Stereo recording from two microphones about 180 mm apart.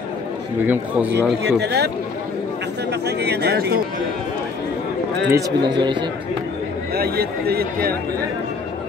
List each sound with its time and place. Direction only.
0.7 s speech: 10° right (ahead or behind)
1.1 s speech: 70° right (ahead or behind)
2.9 s speech: 65° right (ahead or behind)
5.3 s a man's voice: 25° right (ahead or behind)
6.9 s speech: 60° right (ahead or behind)